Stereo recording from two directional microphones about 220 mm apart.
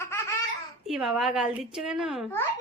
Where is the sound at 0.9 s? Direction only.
Centre (ahead or behind).